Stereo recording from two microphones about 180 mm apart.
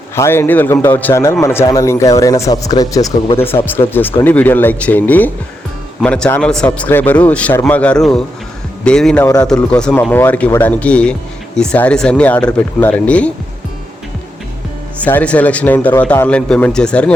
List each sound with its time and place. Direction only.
0.2 s a man's voice: 15° left (ahead or behind)
9.2 s speech: 20° left (ahead or behind)
9.5 s a man's voice: 5° left (ahead or behind)
14.9 s a man's voice: 10° left (ahead or behind)